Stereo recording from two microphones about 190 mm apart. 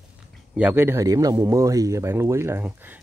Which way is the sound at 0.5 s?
10° right (ahead or behind).